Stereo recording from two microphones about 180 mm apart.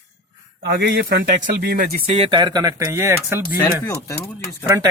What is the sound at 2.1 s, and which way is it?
Speech, 30° right (ahead or behind).